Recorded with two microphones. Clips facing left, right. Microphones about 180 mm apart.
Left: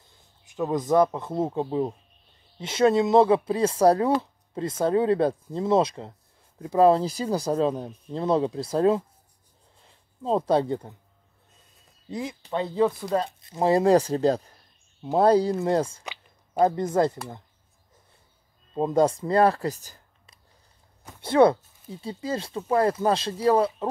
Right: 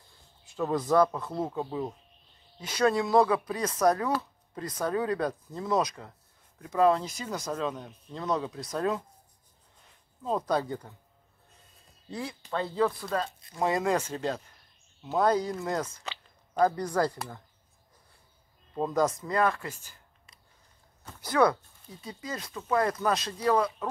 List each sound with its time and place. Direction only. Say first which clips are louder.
0.5 s speech: left 3 dB; 15° left (ahead or behind)
12.1 s speech: left 4 dB; 20° left (ahead or behind)
18.8 s speech: left 5 dB; 25° left (ahead or behind)
21.2 s speech: left 6 dB; 25° left (ahead or behind)